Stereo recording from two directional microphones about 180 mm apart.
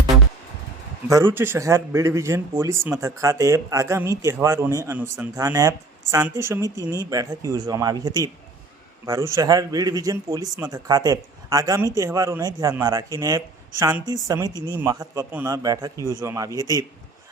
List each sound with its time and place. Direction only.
1.3 s a man's voice: 10° right (ahead or behind)